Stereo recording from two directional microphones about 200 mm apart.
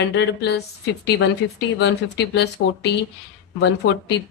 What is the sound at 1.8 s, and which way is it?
Speech, 55° left (ahead or behind).